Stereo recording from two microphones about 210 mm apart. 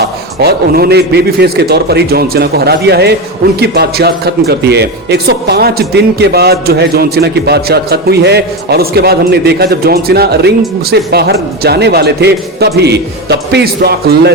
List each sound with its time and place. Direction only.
0.3 s speech: 50° right (ahead or behind)